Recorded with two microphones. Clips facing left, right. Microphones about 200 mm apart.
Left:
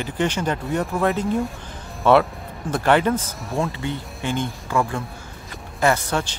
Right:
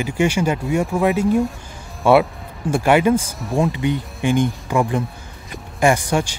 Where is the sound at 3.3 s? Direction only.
Centre (ahead or behind).